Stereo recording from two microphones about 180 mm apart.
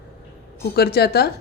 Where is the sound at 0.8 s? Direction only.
60° left (ahead or behind).